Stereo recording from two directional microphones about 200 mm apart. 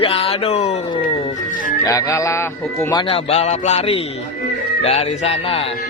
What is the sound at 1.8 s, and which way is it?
Music, 15° left (ahead or behind).